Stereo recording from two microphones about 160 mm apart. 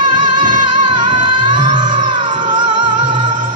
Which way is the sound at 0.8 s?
30° right (ahead or behind).